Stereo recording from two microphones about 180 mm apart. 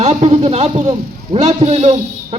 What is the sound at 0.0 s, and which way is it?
A man's voice, 35° right (ahead or behind).